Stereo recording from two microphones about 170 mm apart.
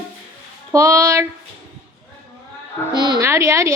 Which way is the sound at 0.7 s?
20° right (ahead or behind).